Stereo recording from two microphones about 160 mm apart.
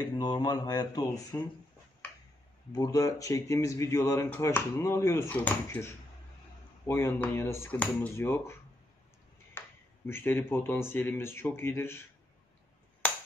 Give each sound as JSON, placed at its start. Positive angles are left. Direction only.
{"t": 0.2, "sound": "speech", "side_deg": 25}
{"t": 2.7, "sound": "speech", "side_deg": 20}
{"t": 6.9, "sound": "speech", "side_deg": 15}